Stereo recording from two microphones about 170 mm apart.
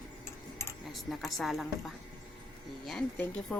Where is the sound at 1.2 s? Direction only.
Centre (ahead or behind).